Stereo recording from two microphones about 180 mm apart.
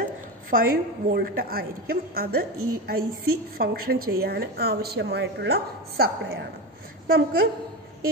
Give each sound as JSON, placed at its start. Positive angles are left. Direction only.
{"t": 0.5, "sound": "a woman's voice", "side_deg": -50}